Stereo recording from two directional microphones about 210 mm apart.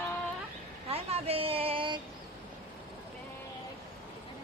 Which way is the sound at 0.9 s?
30° right (ahead or behind).